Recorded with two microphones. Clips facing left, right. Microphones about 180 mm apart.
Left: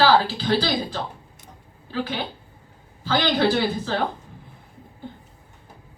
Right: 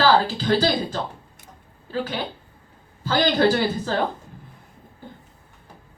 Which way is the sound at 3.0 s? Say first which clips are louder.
Right 2 dB; 45° right (ahead or behind).